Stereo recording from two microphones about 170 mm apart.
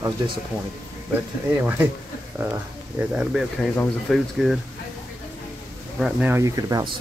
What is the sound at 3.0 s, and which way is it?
Speech, 5° right (ahead or behind).